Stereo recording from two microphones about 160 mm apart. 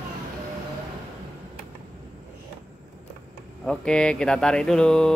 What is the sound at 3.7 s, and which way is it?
Speech, 5° left (ahead or behind).